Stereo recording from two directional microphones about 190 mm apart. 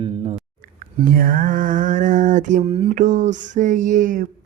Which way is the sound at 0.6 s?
45° right (ahead or behind).